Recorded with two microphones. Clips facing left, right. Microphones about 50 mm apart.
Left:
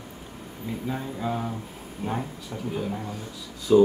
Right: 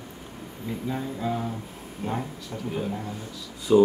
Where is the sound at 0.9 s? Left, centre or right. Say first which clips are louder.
Right 1 dB; centre.